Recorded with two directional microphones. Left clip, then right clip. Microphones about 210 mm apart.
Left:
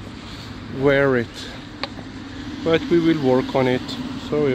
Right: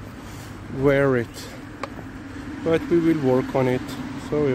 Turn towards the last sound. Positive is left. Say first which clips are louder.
# left 2 dB
turn(degrees=-10)  # may be behind; listen again after turning